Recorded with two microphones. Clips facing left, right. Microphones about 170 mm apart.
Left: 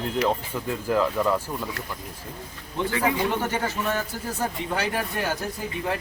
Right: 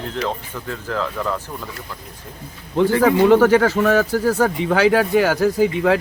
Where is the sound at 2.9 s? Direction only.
70° right (ahead or behind); by 5.9 s 90° right.